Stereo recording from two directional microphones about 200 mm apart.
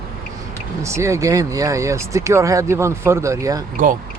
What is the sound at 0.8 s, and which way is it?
Speech, 15° right (ahead or behind).